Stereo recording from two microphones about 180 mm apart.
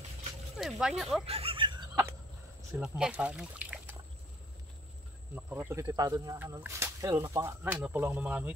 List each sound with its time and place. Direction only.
0.6 s speech: centre (ahead or behind)
1.2 s a sound: 35° right (ahead or behind)
2.8 s speech: 5° right (ahead or behind)
5.3 s speech: 10° right (ahead or behind)